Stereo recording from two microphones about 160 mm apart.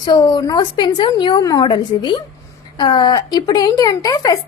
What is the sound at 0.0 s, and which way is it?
A woman's voice, 25° left (ahead or behind).